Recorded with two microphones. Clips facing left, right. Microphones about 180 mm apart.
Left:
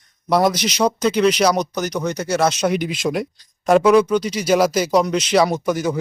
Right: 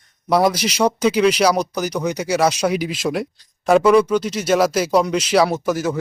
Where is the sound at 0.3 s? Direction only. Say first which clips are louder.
Even; 5° right (ahead or behind).